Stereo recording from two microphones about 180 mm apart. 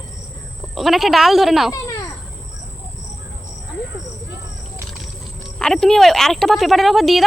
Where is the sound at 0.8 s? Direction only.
Centre (ahead or behind).